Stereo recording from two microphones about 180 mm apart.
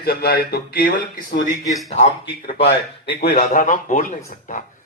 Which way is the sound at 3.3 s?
45° left (ahead or behind).